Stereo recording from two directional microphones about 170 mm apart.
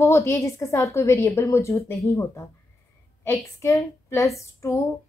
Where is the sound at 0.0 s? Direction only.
15° left (ahead or behind).